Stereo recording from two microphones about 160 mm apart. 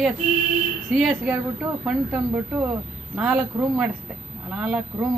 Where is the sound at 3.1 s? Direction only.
10° right (ahead or behind).